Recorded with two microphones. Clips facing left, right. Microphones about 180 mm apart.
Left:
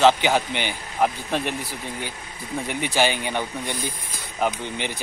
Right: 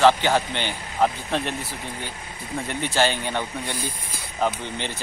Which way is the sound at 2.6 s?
10° left (ahead or behind).